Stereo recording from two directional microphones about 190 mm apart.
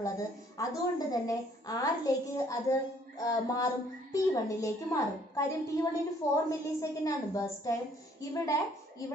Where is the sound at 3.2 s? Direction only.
20° left (ahead or behind).